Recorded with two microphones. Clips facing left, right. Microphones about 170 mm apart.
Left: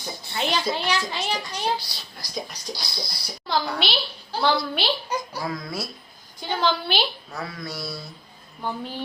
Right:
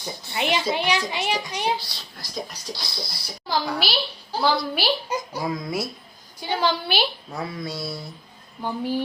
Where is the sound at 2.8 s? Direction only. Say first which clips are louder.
Even; 5° right (ahead or behind); by 5.8 s 20° right (ahead or behind).